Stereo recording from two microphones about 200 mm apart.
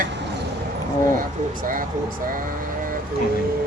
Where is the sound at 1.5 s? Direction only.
45° right (ahead or behind).